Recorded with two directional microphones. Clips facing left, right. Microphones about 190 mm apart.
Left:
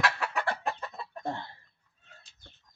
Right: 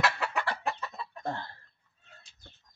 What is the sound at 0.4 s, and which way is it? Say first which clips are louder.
Chicken: left 2 dB; 50° left (ahead or behind).